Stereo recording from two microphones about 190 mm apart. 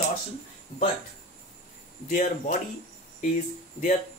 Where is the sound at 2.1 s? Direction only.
45° left (ahead or behind).